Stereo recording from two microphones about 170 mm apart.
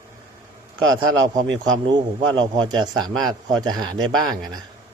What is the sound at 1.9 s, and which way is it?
A man's voice, 25° right (ahead or behind).